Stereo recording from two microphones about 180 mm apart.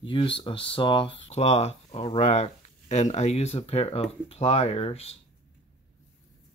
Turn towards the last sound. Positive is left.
turn(degrees=35)  # may be behind; listen again after turning